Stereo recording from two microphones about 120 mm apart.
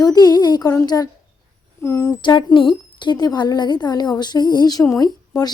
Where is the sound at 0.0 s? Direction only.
35° left (ahead or behind).